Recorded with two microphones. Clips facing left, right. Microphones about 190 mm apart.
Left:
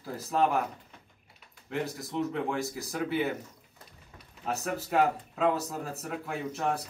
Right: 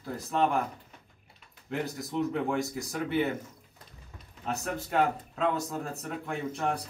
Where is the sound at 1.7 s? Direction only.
Centre (ahead or behind).